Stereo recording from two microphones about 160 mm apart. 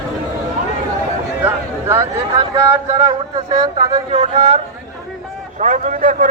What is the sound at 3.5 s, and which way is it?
Speech, 25° right (ahead or behind).